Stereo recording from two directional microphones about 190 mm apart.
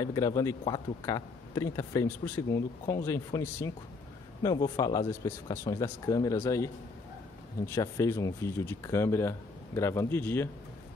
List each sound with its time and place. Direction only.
0.0 s a man's voice: 20° left (ahead or behind)